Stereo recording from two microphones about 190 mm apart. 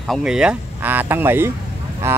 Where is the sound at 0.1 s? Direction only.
5° right (ahead or behind).